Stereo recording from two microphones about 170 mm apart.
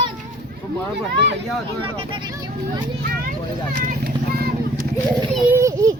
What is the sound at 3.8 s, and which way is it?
Children playing, 65° right (ahead or behind).